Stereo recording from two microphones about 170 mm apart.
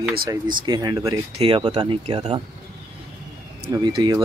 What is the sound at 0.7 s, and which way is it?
Speech, 25° right (ahead or behind).